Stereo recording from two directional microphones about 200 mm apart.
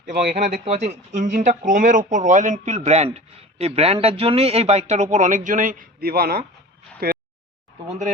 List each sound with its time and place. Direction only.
0.0 s speech: 35° right (ahead or behind)